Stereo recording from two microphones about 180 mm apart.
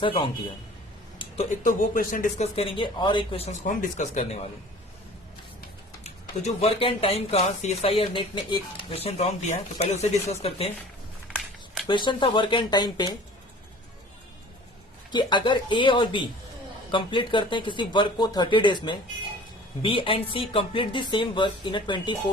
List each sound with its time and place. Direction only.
0.0 s speech: 30° left (ahead or behind)
1.2 s speech: 40° left (ahead or behind)
2.6 s speech: 30° left (ahead or behind)
6.0 s speech: 35° left (ahead or behind)
11.3 s a sound: centre (ahead or behind)
11.9 s speech: 25° left (ahead or behind)
15.1 s speech: 25° left (ahead or behind)